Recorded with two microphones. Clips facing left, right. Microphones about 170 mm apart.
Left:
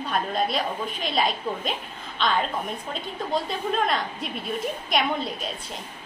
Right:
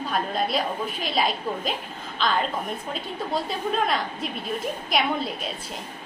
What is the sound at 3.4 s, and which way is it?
A woman's voice, centre (ahead or behind).